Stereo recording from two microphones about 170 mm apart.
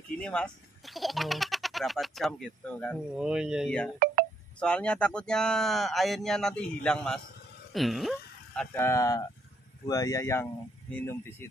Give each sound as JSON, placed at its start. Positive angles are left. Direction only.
{"t": 0.2, "sound": "speech", "side_deg": 5}
{"t": 4.0, "sound": "telephone dialing", "side_deg": -60}
{"t": 4.6, "sound": "speech", "side_deg": 5}
{"t": 8.8, "sound": "speech", "side_deg": 20}